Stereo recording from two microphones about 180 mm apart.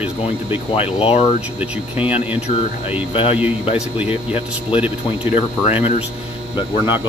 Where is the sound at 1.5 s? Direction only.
10° right (ahead or behind).